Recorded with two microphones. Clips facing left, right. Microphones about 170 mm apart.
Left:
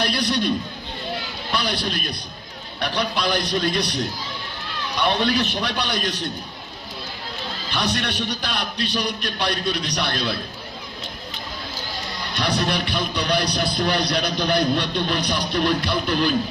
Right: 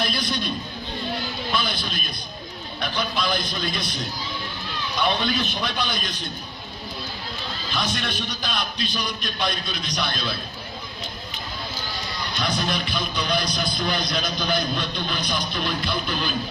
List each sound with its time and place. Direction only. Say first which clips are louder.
0.0 s a sound: left 4 dB; 75° left (ahead or behind)
1.5 s speech: left 4 dB; 75° left (ahead or behind)
5.2 s speech: left 4 dB; 75° left (ahead or behind)
7.8 s speech: left 5 dB; 75° left (ahead or behind)
12.4 s speech: left 4 dB; 70° left (ahead or behind)